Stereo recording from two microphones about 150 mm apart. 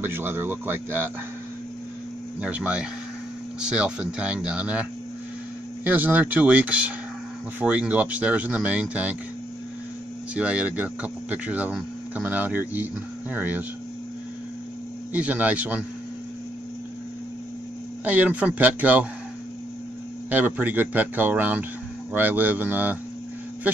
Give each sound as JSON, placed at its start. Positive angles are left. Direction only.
{"t": 0.0, "sound": "speech", "side_deg": -15}
{"t": 2.4, "sound": "speech", "side_deg": -10}
{"t": 5.9, "sound": "speech", "side_deg": -10}
{"t": 10.3, "sound": "speech", "side_deg": -10}
{"t": 15.1, "sound": "speech", "side_deg": -10}
{"t": 18.0, "sound": "speech", "side_deg": -10}
{"t": 20.2, "sound": "speech", "side_deg": -10}